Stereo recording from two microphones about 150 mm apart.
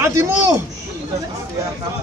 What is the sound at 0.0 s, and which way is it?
Speech, 20° right (ahead or behind).